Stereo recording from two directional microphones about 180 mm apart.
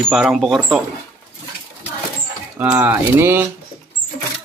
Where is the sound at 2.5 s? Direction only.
10° right (ahead or behind).